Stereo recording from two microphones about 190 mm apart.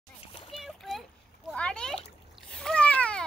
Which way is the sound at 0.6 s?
Centre (ahead or behind).